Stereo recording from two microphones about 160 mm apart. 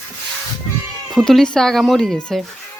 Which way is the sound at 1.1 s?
Centre (ahead or behind).